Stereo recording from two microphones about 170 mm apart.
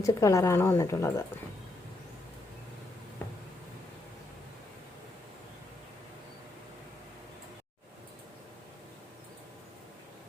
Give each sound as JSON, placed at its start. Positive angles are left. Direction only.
{"t": 0.0, "sound": "a woman's voice", "side_deg": 20}